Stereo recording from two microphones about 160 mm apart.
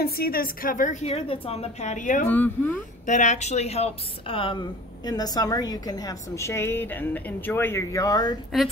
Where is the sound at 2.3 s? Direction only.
10° left (ahead or behind).